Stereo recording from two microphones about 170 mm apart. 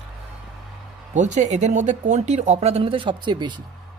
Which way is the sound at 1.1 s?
45° right (ahead or behind).